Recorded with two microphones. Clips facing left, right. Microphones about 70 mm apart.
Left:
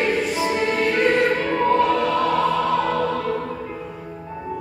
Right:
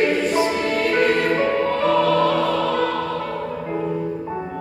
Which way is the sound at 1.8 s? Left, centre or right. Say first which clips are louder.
Right 3 dB; centre.